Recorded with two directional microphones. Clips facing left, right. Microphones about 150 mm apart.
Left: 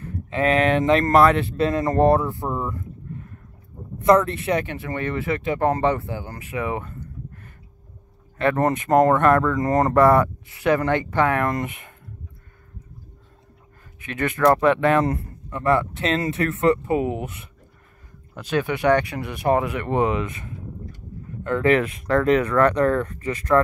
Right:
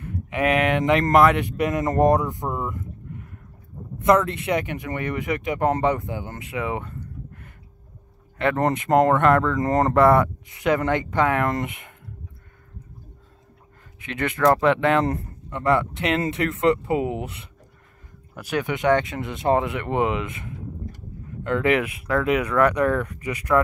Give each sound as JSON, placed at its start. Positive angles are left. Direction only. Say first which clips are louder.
{"t": 0.0, "sound": "speech", "louder": "left 1 dB", "side_deg": -15}
{"t": 8.4, "sound": "speech", "louder": "left 1 dB", "side_deg": -20}
{"t": 14.0, "sound": "speech", "louder": "left 1 dB", "side_deg": -20}
{"t": 18.4, "sound": "speech", "louder": "left 2 dB", "side_deg": -15}